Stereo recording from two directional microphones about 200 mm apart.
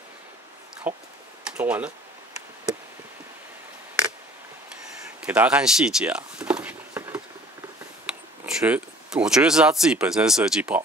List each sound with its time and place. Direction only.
0.8 s speech: 10° right (ahead or behind)
5.2 s speech: 5° right (ahead or behind)